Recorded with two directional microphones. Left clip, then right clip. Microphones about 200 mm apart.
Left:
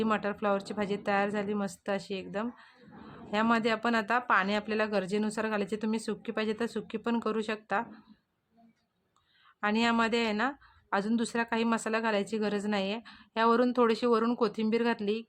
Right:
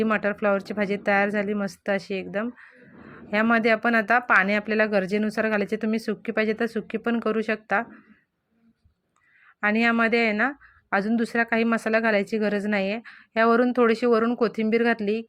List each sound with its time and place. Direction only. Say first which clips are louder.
0.0 s speech: right 7 dB; 15° right (ahead or behind)
9.6 s speech: right 6 dB; 15° right (ahead or behind)